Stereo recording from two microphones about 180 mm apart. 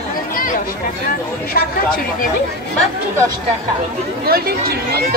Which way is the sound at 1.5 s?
55° left (ahead or behind).